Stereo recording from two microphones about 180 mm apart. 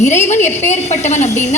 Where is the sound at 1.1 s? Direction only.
40° left (ahead or behind).